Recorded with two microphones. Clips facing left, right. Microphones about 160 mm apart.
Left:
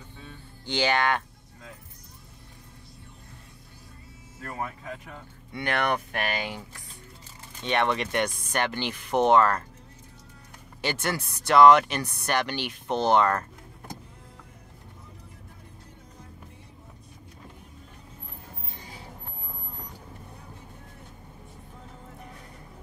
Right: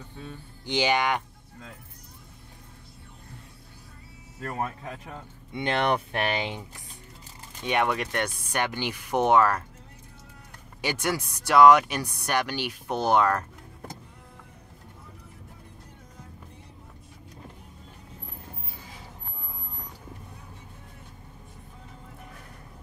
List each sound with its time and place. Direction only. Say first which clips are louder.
0.7 s speech: even; 15° right (ahead or behind)
4.5 s speech: right 2 dB; 35° right (ahead or behind)
5.5 s speech: right 2 dB; 20° right (ahead or behind)
7.6 s speech: even; 10° right (ahead or behind)
8.5 s speech: even; 10° right (ahead or behind)
10.8 s speech: right 1 dB; 10° right (ahead or behind)
18.7 s a sound: left 1 dB; 5° right (ahead or behind)